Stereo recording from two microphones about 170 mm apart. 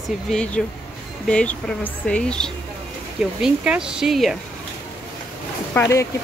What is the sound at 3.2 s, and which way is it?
Speech, 5° right (ahead or behind).